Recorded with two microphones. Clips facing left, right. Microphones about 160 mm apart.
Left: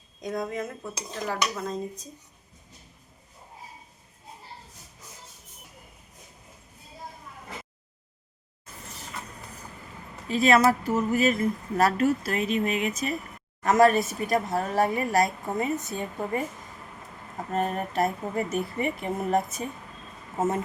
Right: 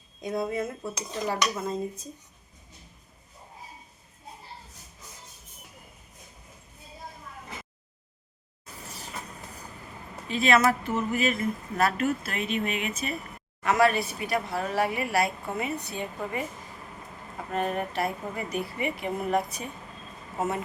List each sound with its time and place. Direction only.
0.2 s speech: 5° right (ahead or behind)
10.2 s speech: 40° left (ahead or behind)
17.5 s speech: 40° left (ahead or behind)